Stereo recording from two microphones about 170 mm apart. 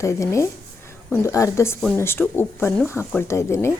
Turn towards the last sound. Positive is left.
turn(degrees=15)  # may be behind; listen again after turning